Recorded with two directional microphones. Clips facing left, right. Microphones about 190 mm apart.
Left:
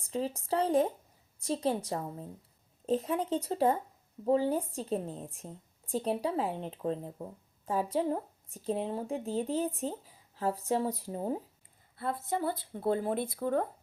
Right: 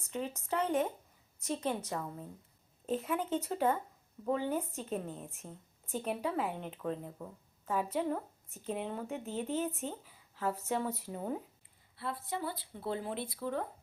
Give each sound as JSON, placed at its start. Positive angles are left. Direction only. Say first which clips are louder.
{"t": 0.0, "sound": "speech", "louder": "left 5 dB", "side_deg": 35}
{"t": 11.9, "sound": "speech", "louder": "left 5 dB", "side_deg": 45}